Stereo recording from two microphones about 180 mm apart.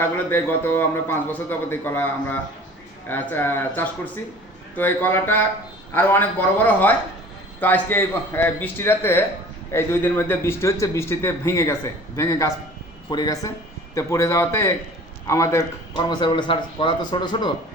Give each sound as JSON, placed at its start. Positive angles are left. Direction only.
{"t": 0.0, "sound": "a man's voice", "side_deg": 10}